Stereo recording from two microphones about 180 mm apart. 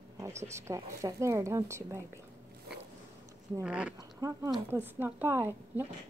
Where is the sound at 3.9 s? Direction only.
20° right (ahead or behind).